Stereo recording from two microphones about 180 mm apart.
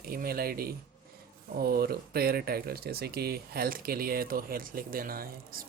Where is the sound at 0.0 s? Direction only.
55° right (ahead or behind).